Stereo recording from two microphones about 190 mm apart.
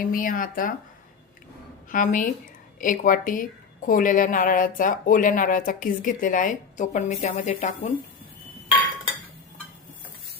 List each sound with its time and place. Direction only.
0.0 s a woman's voice: 45° left (ahead or behind)
1.9 s a woman's voice: 45° left (ahead or behind)